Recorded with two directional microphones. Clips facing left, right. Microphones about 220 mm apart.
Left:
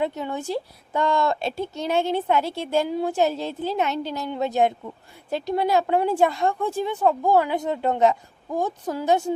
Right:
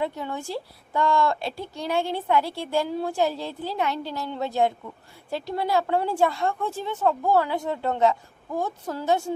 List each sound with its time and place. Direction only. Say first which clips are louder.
0.0 s a woman's voice: left 3 dB; 20° left (ahead or behind)